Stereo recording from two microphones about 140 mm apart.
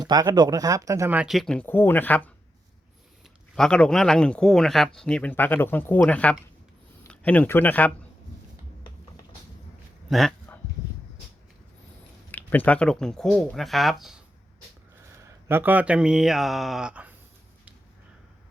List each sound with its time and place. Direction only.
0.0 s speech: 30° right (ahead or behind)
1.1 s speech: 5° right (ahead or behind)
3.5 s speech: 5° left (ahead or behind)
10.1 s a man's voice: centre (ahead or behind)
12.3 s speech: 10° left (ahead or behind)
15.2 s speech: 15° right (ahead or behind)